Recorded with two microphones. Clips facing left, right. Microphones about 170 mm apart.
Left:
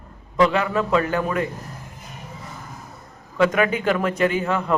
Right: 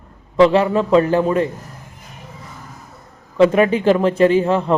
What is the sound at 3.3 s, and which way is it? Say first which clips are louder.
A man's voice: right 6 dB; 30° right (ahead or behind).